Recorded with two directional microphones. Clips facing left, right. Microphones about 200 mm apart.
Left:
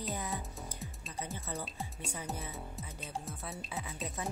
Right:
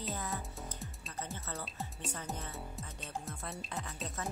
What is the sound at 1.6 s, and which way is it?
Speech, centre (ahead or behind).